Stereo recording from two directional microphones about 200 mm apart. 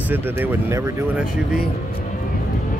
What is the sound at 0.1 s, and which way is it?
Speech, 10° right (ahead or behind).